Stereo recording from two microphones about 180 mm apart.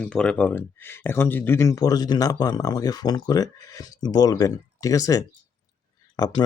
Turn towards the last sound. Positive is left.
turn(degrees=20)  # may be behind; listen again after turning